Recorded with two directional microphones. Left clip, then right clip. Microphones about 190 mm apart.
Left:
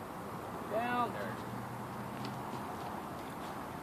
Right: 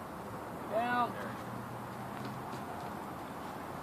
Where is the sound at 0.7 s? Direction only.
45° right (ahead or behind).